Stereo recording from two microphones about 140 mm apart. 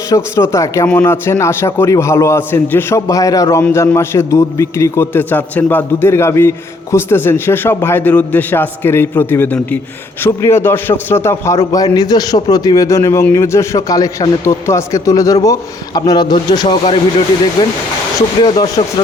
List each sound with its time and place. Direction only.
0.1 s a man's voice: 20° left (ahead or behind); by 17.2 s 40° left (ahead or behind)
17.6 s a man's voice: 30° left (ahead or behind)
18.8 s speech: 35° left (ahead or behind)